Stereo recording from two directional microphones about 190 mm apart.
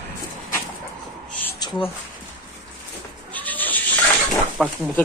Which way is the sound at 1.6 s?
20° left (ahead or behind).